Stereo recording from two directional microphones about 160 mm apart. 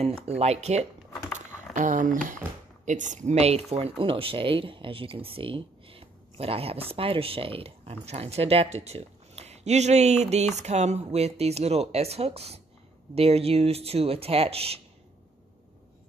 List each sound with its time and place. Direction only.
0.0 s speech: 40° right (ahead or behind)
1.7 s speech: 55° right (ahead or behind); by 14.8 s 40° right (ahead or behind)